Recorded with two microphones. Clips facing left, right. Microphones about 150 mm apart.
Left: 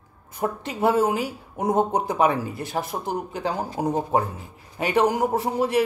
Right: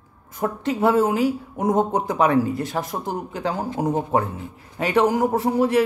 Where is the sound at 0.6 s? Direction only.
10° left (ahead or behind).